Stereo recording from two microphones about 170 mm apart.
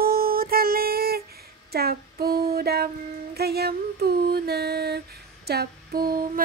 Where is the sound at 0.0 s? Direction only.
60° right (ahead or behind).